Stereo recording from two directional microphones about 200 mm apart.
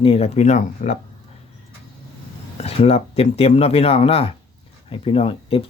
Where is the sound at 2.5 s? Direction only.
30° left (ahead or behind).